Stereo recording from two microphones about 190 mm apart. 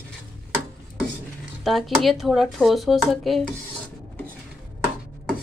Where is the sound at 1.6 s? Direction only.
Centre (ahead or behind).